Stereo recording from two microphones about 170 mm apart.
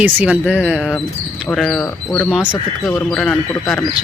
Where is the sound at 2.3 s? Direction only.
5° right (ahead or behind).